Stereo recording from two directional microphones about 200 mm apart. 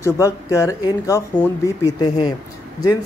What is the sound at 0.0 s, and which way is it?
Speech, 15° left (ahead or behind).